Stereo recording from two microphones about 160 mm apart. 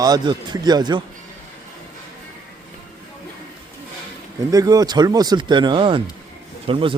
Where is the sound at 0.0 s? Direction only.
25° right (ahead or behind).